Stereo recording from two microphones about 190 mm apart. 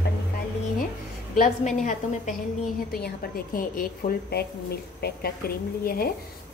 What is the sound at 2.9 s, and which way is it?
A woman's voice, 55° left (ahead or behind).